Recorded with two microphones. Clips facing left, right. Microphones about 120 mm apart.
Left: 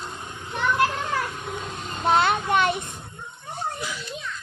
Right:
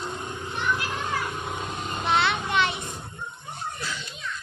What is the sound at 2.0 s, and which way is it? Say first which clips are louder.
Child singing: left 4 dB; 45° left (ahead or behind).